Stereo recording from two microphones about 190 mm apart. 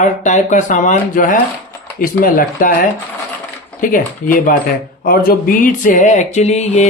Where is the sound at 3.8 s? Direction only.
45° left (ahead or behind).